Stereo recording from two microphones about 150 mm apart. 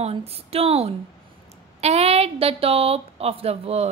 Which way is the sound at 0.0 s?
40° right (ahead or behind).